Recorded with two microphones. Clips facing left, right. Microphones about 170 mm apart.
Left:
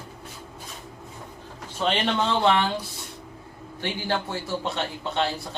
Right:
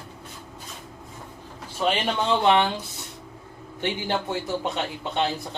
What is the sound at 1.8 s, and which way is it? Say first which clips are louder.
Speech: even; 10° right (ahead or behind).